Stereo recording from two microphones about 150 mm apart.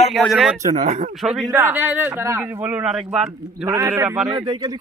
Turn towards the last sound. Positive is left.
turn(degrees=-30)  # may be behind; listen again after turning